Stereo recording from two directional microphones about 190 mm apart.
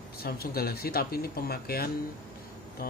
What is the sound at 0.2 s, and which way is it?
Speech, 55° left (ahead or behind).